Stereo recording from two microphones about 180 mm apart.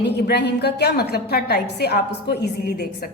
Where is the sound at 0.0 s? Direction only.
70° left (ahead or behind).